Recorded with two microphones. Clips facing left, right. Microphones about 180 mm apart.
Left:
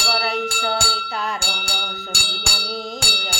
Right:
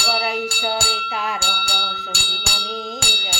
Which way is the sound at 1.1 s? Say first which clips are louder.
Right 1 dB; centre (ahead or behind).